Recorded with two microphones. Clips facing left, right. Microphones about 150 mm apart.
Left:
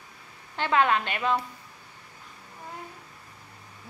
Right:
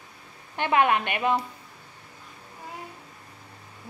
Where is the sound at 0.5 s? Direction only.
15° right (ahead or behind).